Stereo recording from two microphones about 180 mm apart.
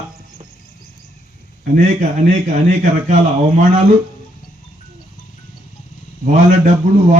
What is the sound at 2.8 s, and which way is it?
Speech, 40° right (ahead or behind).